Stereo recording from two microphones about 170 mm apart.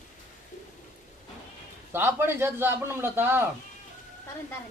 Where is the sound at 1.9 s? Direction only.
15° right (ahead or behind).